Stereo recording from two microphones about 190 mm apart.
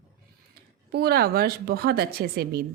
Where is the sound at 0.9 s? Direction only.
55° right (ahead or behind).